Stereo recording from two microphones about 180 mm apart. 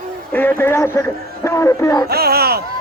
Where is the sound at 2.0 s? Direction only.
60° right (ahead or behind).